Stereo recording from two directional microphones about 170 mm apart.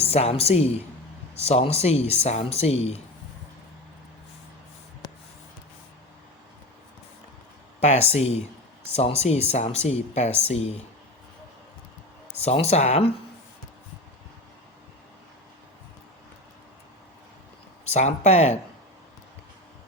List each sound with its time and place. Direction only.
0.0 s speech: 40° left (ahead or behind)
7.8 s speech: 40° left (ahead or behind)
12.5 s speech: 40° left (ahead or behind)
17.8 s speech: 40° left (ahead or behind)